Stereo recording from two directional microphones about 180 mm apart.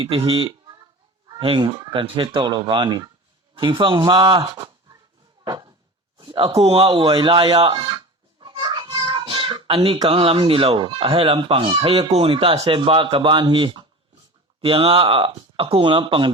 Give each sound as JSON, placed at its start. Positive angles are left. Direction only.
{"t": 0.0, "sound": "speech", "side_deg": -30}
{"t": 5.5, "sound": "a sound", "side_deg": -25}
{"t": 6.1, "sound": "speech", "side_deg": -25}